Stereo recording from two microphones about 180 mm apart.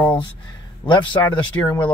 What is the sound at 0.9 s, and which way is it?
Speech, 25° left (ahead or behind).